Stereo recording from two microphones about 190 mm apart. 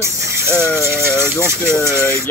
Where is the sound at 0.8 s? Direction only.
15° right (ahead or behind).